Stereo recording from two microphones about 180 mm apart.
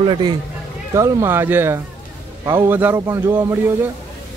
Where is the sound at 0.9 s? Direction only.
15° right (ahead or behind).